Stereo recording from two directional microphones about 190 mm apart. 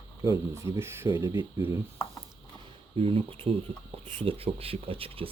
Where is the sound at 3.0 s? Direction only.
30° right (ahead or behind).